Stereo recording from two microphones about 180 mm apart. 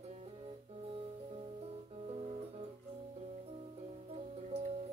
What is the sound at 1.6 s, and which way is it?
Music, 35° right (ahead or behind).